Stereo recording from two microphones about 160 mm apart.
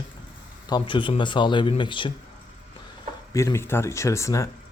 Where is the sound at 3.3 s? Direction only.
20° left (ahead or behind).